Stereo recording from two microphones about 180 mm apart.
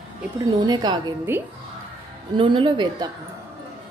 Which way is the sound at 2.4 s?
25° right (ahead or behind).